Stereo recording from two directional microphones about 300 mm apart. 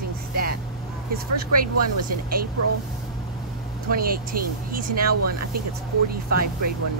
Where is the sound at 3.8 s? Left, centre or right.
Right.